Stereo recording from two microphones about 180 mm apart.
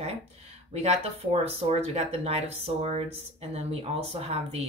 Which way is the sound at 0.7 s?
35° right (ahead or behind).